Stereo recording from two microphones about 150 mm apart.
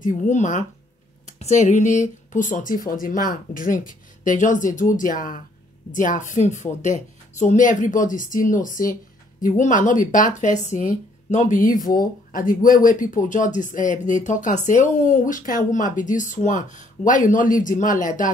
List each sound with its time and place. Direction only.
0.0 s speech: 60° left (ahead or behind)